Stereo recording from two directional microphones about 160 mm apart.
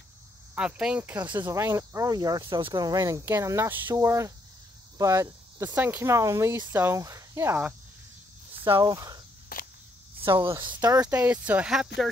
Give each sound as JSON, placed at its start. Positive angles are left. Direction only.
{"t": 0.6, "sound": "speech", "side_deg": -5}
{"t": 1.2, "sound": "speech", "side_deg": -25}
{"t": 9.5, "sound": "a sound", "side_deg": 65}
{"t": 10.2, "sound": "speech", "side_deg": -15}